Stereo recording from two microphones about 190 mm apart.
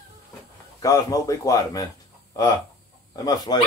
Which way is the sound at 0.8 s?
15° left (ahead or behind).